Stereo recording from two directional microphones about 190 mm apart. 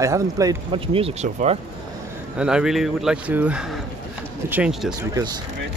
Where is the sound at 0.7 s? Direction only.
30° right (ahead or behind).